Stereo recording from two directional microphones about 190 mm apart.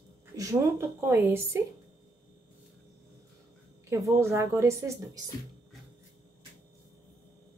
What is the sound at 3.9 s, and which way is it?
A woman's voice, 15° right (ahead or behind).